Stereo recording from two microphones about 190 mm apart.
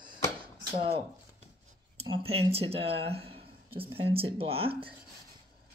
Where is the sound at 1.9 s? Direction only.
30° right (ahead or behind).